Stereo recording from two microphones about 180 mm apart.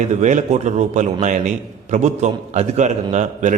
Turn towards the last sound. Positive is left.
turn(degrees=-40)  # may be behind; listen again after turning